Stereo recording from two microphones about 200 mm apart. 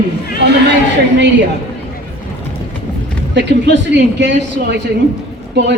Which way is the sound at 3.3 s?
60° right (ahead or behind).